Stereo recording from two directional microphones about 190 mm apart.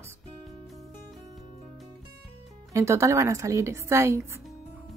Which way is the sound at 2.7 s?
15° right (ahead or behind).